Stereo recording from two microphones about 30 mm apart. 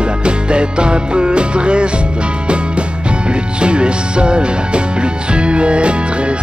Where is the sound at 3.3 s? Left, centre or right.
Right.